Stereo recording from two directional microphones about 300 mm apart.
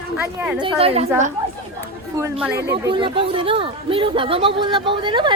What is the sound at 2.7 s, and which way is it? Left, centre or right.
Speech, centre.